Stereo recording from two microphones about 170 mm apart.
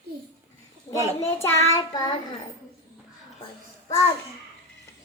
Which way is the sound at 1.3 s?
15° left (ahead or behind).